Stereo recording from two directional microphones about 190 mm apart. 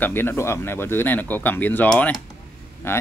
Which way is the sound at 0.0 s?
10° left (ahead or behind).